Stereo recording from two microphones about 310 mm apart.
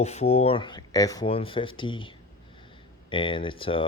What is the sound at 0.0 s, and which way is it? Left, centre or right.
Speech, left.